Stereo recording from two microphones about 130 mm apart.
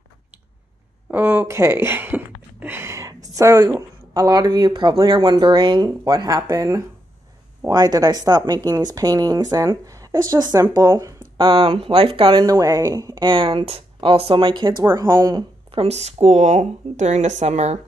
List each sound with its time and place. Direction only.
1.1 s a woman's voice: 15° right (ahead or behind); by 15.8 s 35° right (ahead or behind)
15.8 s speech: 55° right (ahead or behind)